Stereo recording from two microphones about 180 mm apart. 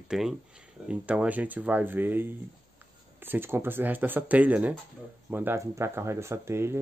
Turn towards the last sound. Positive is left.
turn(degrees=-15)  # may be behind; listen again after turning